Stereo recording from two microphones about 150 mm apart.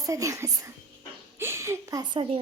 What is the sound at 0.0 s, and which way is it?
A woman's voice, 20° right (ahead or behind).